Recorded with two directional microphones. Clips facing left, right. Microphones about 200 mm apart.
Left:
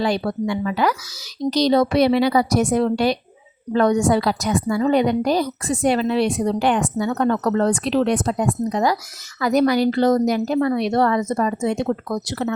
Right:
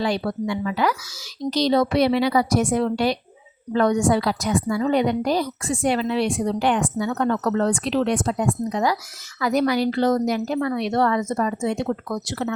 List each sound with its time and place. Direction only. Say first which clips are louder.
0.0 s a woman's voice: left 2 dB; 40° left (ahead or behind)